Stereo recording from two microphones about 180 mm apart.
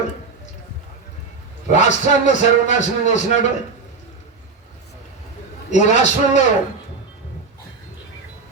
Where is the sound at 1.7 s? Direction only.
40° left (ahead or behind).